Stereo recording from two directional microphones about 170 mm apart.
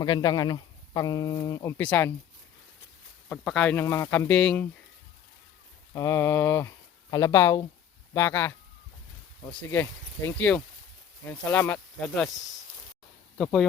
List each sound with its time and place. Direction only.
0.0 s speech: 25° left (ahead or behind)
3.2 s speech: 5° left (ahead or behind)
5.9 s speech: 20° left (ahead or behind)
13.4 s speech: 5° left (ahead or behind)